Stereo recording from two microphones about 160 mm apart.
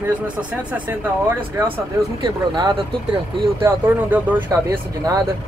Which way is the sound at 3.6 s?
10° right (ahead or behind).